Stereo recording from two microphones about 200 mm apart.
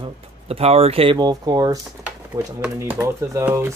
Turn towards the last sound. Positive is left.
turn(degrees=-10)  # may be behind; listen again after turning